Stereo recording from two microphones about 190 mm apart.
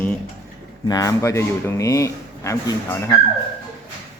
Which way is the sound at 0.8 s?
20° left (ahead or behind).